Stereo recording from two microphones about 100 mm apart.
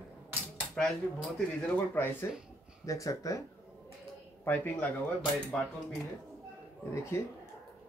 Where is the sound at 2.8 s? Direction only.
35° left (ahead or behind).